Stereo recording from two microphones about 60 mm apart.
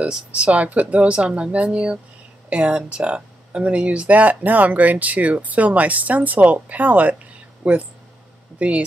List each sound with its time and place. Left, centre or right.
0.0 s speech: centre